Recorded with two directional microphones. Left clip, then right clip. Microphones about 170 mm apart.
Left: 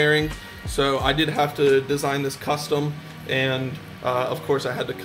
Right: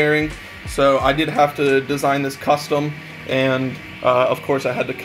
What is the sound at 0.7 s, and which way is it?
Speech, 10° right (ahead or behind).